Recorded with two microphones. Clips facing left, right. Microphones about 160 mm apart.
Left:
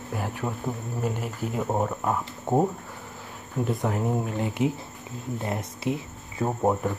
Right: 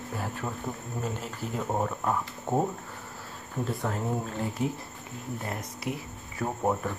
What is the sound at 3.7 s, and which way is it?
Speech, 20° left (ahead or behind).